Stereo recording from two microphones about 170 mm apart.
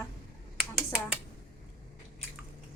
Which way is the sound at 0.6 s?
Centre (ahead or behind).